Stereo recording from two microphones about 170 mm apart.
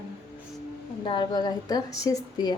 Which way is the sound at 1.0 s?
25° left (ahead or behind).